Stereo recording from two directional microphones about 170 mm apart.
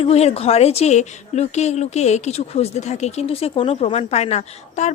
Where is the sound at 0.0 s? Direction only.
35° left (ahead or behind).